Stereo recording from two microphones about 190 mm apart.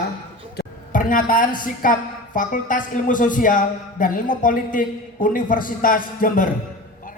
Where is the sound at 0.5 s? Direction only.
50° left (ahead or behind).